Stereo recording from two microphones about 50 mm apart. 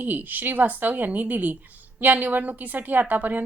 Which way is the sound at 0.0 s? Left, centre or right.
Right.